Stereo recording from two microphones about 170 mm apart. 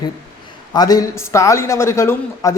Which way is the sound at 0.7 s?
20° left (ahead or behind).